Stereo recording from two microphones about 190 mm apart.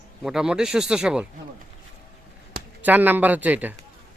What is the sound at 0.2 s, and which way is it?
Speech, 5° right (ahead or behind).